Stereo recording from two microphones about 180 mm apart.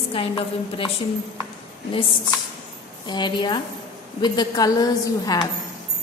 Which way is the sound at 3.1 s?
25° left (ahead or behind).